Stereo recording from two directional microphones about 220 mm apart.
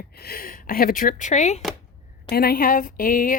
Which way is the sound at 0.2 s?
45° left (ahead or behind).